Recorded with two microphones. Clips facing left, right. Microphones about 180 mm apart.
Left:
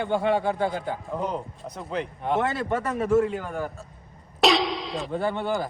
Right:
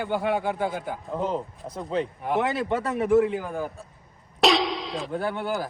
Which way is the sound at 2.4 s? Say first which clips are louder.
Right 1 dB; 20° right (ahead or behind).